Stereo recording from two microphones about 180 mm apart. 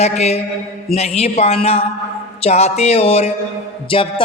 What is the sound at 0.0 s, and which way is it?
A woman's voice, 35° left (ahead or behind).